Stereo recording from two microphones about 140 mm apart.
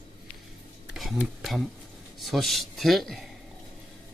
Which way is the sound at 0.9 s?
Centre (ahead or behind).